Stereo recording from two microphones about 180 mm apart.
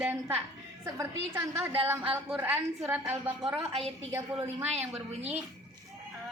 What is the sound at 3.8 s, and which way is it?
A woman's voice, 35° right (ahead or behind).